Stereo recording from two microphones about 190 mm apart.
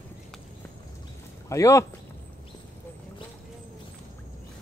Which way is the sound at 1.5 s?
15° left (ahead or behind).